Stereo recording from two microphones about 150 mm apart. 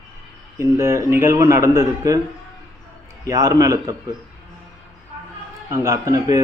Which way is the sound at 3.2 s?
25° right (ahead or behind).